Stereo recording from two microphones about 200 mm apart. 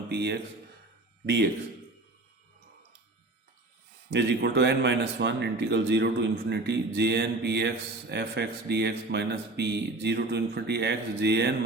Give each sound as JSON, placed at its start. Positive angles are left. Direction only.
{"t": 0.1, "sound": "speech", "side_deg": -55}
{"t": 4.1, "sound": "speech", "side_deg": -60}